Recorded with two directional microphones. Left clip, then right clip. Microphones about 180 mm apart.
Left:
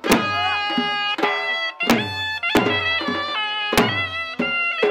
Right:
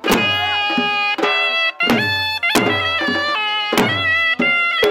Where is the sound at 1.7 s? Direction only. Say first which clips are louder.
Right 4 dB; 30° right (ahead or behind); by 4.6 s 55° right (ahead or behind).